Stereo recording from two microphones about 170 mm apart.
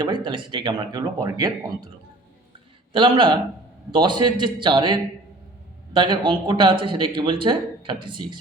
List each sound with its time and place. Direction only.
0.0 s speech: 25° right (ahead or behind)
2.9 s speech: 30° right (ahead or behind)